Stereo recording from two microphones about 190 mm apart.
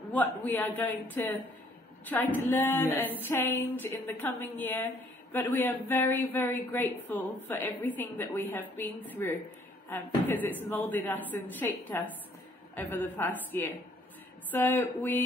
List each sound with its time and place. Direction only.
0.1 s speech: 10° left (ahead or behind)